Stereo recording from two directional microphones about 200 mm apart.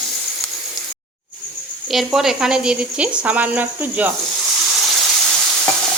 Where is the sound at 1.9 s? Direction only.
Centre (ahead or behind).